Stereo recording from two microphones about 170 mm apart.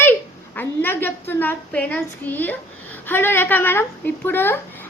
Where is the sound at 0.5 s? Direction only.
10° left (ahead or behind).